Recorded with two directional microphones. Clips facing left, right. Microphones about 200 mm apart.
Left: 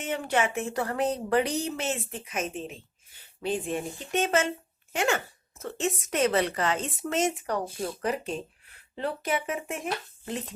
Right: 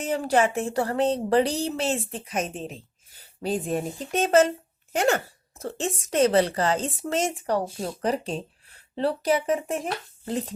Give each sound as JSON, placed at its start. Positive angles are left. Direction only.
{"t": 0.0, "sound": "speech", "side_deg": -35}